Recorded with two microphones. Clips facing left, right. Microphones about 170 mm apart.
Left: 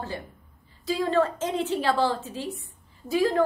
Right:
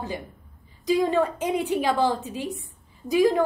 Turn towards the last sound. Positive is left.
turn(degrees=-15)  # may be behind; listen again after turning